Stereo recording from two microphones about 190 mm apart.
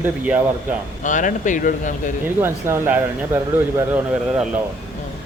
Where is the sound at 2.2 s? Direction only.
10° right (ahead or behind).